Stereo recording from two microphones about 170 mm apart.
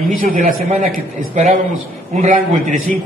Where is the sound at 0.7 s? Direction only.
45° right (ahead or behind).